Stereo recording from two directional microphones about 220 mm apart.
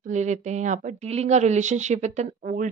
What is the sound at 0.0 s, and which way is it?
Speech, 35° right (ahead or behind).